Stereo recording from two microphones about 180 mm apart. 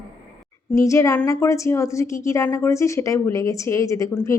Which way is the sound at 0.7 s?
15° left (ahead or behind).